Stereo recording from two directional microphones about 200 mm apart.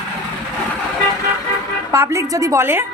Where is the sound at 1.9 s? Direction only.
15° right (ahead or behind).